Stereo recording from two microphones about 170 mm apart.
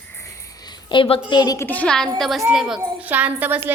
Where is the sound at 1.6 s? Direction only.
10° left (ahead or behind).